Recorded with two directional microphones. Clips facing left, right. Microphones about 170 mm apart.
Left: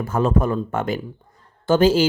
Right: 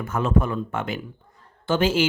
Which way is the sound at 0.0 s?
35° left (ahead or behind).